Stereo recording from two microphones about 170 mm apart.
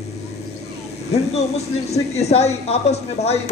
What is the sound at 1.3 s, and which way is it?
Speech, 40° left (ahead or behind).